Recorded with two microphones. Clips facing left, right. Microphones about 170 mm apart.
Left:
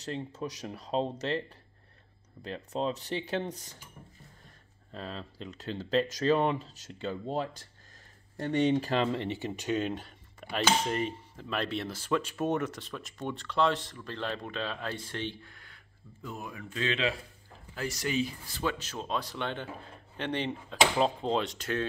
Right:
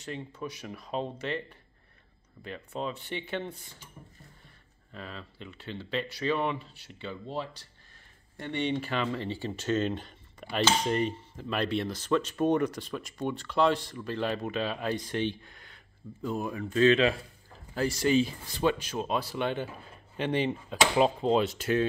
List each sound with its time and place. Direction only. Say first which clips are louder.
0.0 s speech: left 2 dB; 40° left (ahead or behind)
2.4 s speech: left 3 dB; 35° left (ahead or behind)
4.9 s speech: left 3 dB; 35° left (ahead or behind)
9.5 s speech: right 4 dB; 10° left (ahead or behind); by 15.8 s 20° right (ahead or behind)
16.3 s speech: right 8 dB; 35° right (ahead or behind)
17.7 s speech: right 6 dB; 30° right (ahead or behind)
18.5 s speech: right 6 dB; 20° right (ahead or behind)